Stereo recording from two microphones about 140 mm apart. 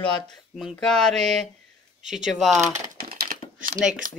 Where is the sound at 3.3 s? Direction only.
75° right (ahead or behind).